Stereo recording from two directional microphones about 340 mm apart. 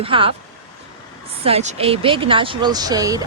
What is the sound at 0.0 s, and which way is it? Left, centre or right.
Speech, centre.